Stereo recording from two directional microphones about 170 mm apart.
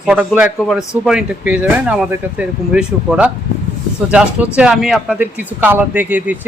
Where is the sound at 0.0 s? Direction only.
5° right (ahead or behind).